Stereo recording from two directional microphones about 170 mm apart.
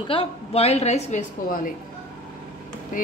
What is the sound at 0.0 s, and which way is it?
A woman's voice, 35° left (ahead or behind).